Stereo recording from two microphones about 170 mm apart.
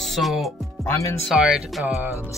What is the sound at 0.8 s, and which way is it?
Speech, 15° left (ahead or behind).